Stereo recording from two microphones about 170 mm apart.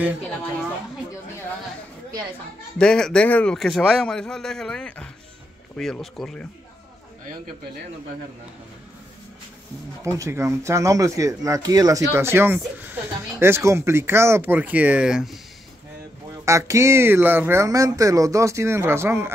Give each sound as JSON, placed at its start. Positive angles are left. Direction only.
{"t": 2.8, "sound": "a man's voice", "side_deg": 5}
{"t": 10.0, "sound": "speech", "side_deg": -15}
{"t": 16.4, "sound": "speech", "side_deg": -15}